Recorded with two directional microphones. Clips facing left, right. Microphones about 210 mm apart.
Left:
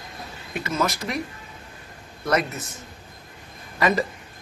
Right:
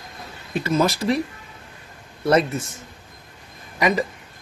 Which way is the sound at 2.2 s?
30° right (ahead or behind).